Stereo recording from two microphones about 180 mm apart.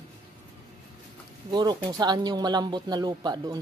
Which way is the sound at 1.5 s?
20° right (ahead or behind).